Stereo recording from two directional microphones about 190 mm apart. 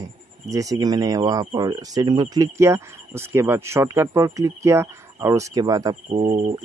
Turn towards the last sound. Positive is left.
turn(degrees=-35)  # may be behind; listen again after turning